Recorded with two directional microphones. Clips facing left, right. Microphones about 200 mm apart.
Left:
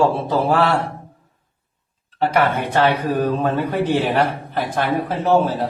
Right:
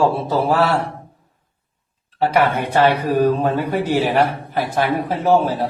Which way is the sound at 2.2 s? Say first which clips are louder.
Right 1 dB; 10° right (ahead or behind).